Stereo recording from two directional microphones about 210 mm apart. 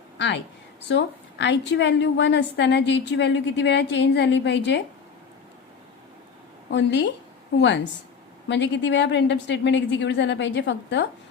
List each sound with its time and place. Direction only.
0.2 s a woman's voice: 55° left (ahead or behind)
6.7 s a woman's voice: 55° left (ahead or behind)
8.4 s a woman's voice: 55° left (ahead or behind)